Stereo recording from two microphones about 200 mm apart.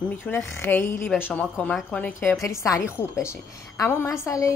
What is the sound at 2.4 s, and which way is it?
Speech, 15° left (ahead or behind).